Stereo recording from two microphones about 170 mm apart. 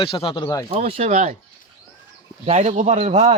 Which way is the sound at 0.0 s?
30° left (ahead or behind).